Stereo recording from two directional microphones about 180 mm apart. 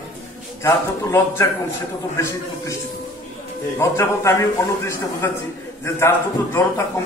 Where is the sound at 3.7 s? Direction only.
15° left (ahead or behind).